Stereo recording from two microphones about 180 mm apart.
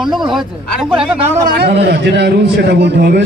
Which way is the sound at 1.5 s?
60° right (ahead or behind).